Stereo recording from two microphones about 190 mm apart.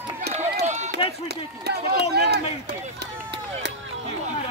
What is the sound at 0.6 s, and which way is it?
Run, 40° right (ahead or behind).